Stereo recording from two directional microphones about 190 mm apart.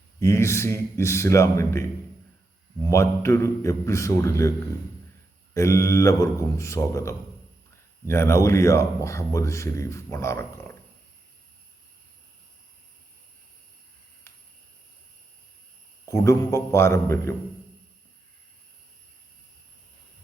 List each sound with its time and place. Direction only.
0.2 s a man's voice: 15° left (ahead or behind)
5.5 s a man's voice: 15° left (ahead or behind)
16.0 s a man's voice: 15° left (ahead or behind)